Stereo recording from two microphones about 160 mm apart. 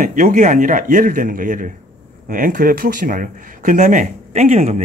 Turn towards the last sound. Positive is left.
turn(degrees=-45)  # may be behind; listen again after turning